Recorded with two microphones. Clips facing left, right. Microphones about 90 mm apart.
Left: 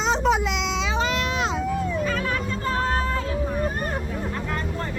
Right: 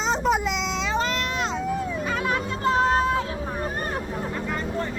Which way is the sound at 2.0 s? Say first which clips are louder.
Even; 20° right (ahead or behind).